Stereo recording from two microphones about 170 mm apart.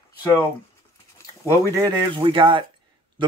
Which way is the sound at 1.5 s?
20° right (ahead or behind).